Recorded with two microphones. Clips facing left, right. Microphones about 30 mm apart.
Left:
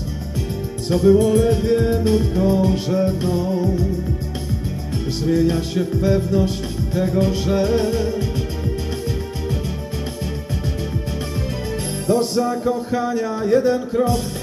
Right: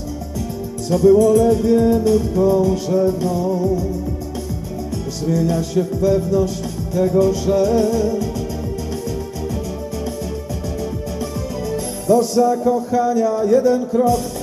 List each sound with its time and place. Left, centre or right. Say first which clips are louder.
0.8 s music: right 3 dB; left
5.4 s music: right 1 dB; left
12.1 s music: right 4 dB; left